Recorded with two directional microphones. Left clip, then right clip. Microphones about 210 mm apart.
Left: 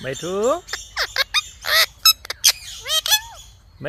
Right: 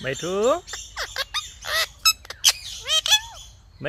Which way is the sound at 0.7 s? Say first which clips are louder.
Left 6 dB; 25° left (ahead or behind).